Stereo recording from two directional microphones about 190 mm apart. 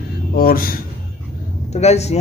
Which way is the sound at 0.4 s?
50° left (ahead or behind).